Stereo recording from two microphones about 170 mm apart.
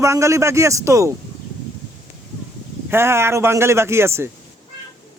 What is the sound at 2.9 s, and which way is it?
A man's voice, 15° right (ahead or behind).